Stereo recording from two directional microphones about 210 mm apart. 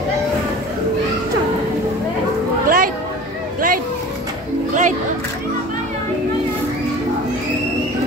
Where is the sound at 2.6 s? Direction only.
40° right (ahead or behind).